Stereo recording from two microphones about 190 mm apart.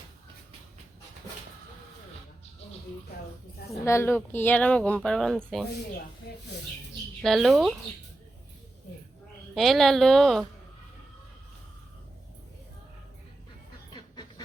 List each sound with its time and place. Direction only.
3.8 s speech: 10° left (ahead or behind)
7.2 s speech: centre (ahead or behind)
9.6 s speech: centre (ahead or behind)
13.9 s a sound: 25° left (ahead or behind)